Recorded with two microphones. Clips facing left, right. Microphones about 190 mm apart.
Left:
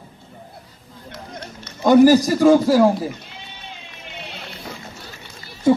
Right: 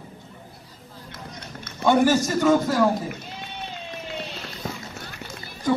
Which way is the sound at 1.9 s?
35° left (ahead or behind).